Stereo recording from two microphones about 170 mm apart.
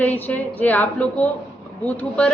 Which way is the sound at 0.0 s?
10° left (ahead or behind).